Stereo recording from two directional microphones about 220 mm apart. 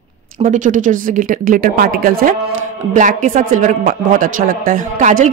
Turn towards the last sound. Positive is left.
turn(degrees=-35)  # may be behind; listen again after turning